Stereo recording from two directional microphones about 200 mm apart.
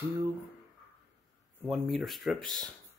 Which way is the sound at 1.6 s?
Centre (ahead or behind).